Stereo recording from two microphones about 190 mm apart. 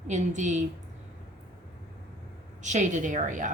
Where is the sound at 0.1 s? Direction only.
40° right (ahead or behind).